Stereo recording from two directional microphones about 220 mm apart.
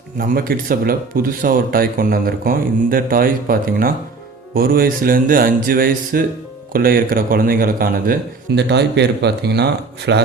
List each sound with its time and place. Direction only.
0.2 s a man's voice: 40° right (ahead or behind)